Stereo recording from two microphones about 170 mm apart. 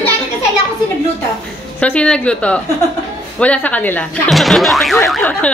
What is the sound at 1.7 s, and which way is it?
A woman's voice, 5° left (ahead or behind).